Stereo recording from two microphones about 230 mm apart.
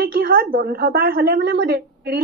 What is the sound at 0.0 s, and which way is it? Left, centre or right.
A woman's voice, right.